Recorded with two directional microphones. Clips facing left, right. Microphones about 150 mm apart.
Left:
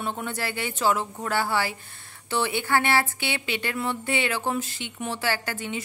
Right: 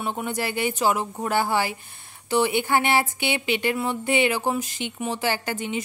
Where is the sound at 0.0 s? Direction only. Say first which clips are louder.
Right 3 dB; 15° right (ahead or behind).